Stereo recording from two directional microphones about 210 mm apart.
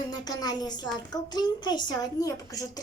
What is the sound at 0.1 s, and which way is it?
A woman's voice, 20° left (ahead or behind).